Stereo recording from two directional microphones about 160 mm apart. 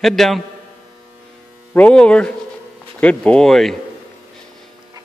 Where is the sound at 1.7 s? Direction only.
10° left (ahead or behind).